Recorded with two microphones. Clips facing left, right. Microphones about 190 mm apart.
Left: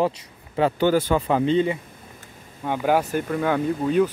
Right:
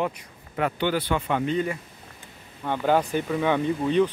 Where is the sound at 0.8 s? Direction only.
40° left (ahead or behind).